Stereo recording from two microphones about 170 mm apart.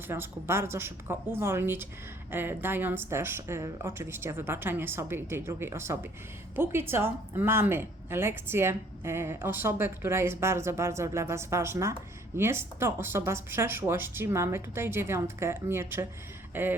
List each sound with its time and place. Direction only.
0.1 s a woman's voice: 15° right (ahead or behind)